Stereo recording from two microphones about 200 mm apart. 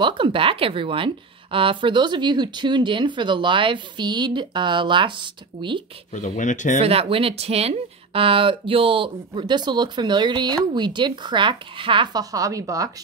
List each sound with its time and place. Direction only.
0.0 s speech: 25° right (ahead or behind)
6.1 s speech: 40° left (ahead or behind)
6.8 s speech: 30° right (ahead or behind)